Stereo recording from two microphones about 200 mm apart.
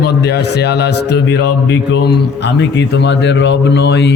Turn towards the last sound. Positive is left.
turn(degrees=55)  # may be behind; listen again after turning